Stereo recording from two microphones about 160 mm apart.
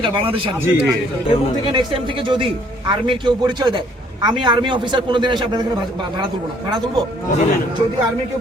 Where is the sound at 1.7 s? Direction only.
30° right (ahead or behind).